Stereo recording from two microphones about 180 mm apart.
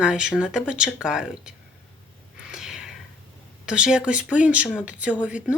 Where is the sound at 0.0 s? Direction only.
5° right (ahead or behind).